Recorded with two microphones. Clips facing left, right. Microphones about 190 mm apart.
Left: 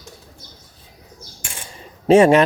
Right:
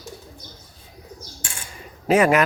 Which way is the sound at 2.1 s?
30° left (ahead or behind).